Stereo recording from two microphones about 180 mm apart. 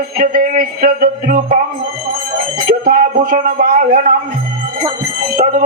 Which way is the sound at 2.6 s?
55° right (ahead or behind).